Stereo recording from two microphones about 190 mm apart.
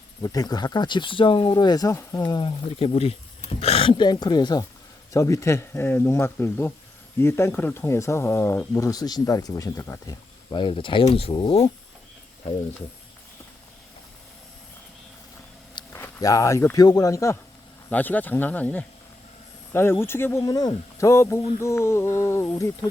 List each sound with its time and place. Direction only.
0.2 s speech: 20° left (ahead or behind)
15.7 s speech: 15° left (ahead or behind)